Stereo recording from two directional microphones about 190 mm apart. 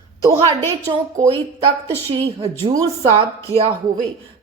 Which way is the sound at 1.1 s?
35° right (ahead or behind).